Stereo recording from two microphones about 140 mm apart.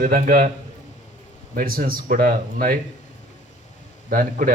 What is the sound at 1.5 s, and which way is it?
A man's voice, 90° right.